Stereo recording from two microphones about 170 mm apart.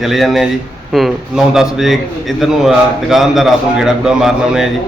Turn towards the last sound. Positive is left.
turn(degrees=-5)  # may be behind; listen again after turning